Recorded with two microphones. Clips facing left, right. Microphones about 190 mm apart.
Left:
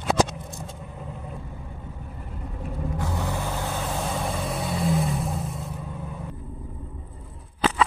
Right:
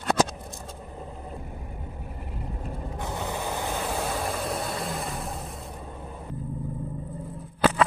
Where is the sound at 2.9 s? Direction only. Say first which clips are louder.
Left 1 dB; 20° right (ahead or behind).